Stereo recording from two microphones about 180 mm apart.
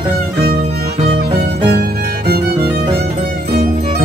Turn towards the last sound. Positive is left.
turn(degrees=-60)  # may be behind; listen again after turning